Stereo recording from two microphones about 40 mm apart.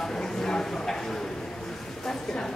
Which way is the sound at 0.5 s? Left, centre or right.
Centre.